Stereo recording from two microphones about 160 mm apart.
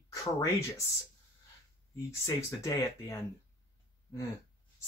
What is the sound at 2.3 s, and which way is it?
Speech, 20° left (ahead or behind).